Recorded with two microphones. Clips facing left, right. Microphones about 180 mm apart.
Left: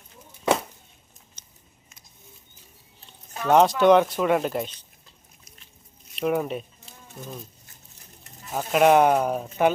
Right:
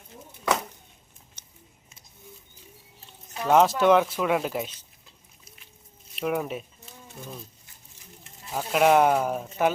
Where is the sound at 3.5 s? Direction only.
Centre (ahead or behind).